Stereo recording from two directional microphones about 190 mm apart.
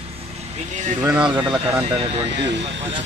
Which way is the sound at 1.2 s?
25° right (ahead or behind).